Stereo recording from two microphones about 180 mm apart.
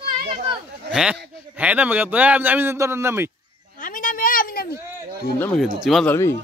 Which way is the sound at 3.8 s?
50° left (ahead or behind).